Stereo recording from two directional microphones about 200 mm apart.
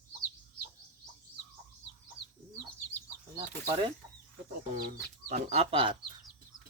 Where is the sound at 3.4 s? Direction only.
25° right (ahead or behind).